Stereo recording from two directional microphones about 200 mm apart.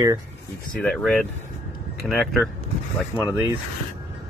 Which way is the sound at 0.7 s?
5° left (ahead or behind).